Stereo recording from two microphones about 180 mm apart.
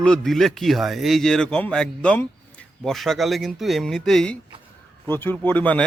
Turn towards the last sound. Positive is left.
turn(degrees=10)  # may be behind; listen again after turning